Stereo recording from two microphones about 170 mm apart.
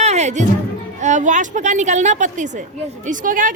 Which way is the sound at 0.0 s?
40° right (ahead or behind).